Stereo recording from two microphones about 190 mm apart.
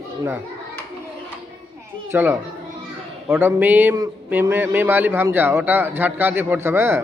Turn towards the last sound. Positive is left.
turn(degrees=-10)  # may be behind; listen again after turning